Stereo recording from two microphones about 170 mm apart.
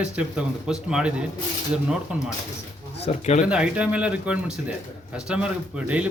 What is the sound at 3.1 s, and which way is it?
Speech, 40° left (ahead or behind).